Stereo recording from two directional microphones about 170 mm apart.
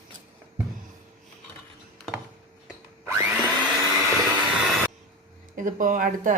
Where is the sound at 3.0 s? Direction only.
10° right (ahead or behind).